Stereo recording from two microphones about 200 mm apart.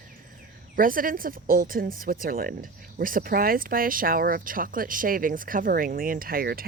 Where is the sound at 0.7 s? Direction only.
45° right (ahead or behind).